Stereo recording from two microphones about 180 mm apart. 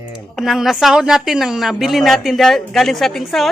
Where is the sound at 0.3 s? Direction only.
Centre (ahead or behind).